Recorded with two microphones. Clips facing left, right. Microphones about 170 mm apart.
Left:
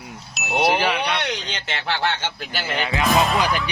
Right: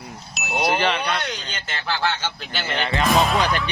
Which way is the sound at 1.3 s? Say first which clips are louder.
Left 3 dB; 70° left (ahead or behind).